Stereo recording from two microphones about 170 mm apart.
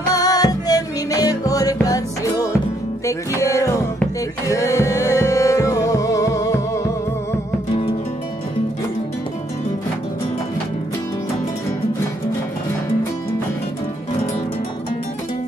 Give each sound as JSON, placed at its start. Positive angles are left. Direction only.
{"t": 0.1, "sound": "music", "side_deg": 20}
{"t": 3.1, "sound": "music", "side_deg": 20}